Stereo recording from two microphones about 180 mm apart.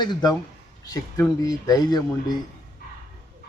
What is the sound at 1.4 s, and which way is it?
Speech, 20° left (ahead or behind).